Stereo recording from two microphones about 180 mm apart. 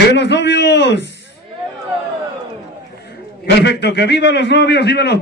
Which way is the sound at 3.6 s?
65° left (ahead or behind).